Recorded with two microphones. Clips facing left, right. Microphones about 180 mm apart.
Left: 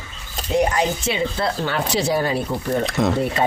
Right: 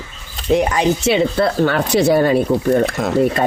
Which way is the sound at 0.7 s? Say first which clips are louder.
Right 6 dB; 65° right (ahead or behind).